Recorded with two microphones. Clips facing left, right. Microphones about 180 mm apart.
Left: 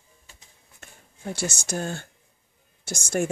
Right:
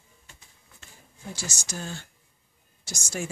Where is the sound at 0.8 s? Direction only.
60° left (ahead or behind).